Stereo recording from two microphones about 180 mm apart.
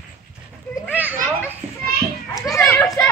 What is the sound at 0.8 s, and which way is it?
Children playing, 10° right (ahead or behind).